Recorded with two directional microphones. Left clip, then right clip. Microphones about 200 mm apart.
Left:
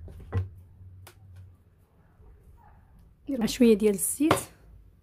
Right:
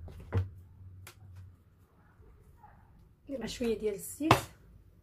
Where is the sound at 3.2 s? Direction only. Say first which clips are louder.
Left 12 dB; 55° left (ahead or behind).